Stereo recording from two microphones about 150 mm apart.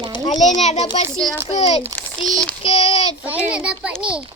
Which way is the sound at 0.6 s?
45° left (ahead or behind).